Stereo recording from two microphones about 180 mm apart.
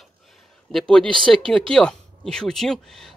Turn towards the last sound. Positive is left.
turn(degrees=0)  # may be behind; listen again after turning